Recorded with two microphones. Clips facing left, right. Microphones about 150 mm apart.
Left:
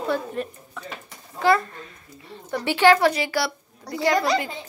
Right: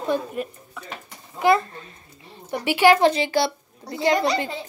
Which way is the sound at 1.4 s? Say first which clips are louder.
Right 1 dB; 15° right (ahead or behind).